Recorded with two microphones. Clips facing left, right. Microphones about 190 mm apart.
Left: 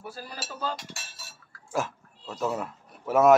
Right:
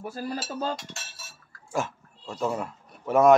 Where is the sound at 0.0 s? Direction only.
45° right (ahead or behind).